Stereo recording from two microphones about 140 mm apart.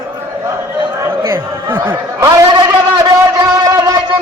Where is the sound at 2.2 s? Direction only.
30° right (ahead or behind).